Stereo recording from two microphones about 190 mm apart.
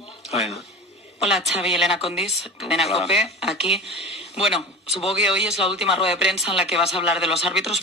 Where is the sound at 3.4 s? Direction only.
Centre (ahead or behind).